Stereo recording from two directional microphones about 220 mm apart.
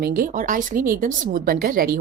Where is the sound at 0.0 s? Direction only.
40° right (ahead or behind).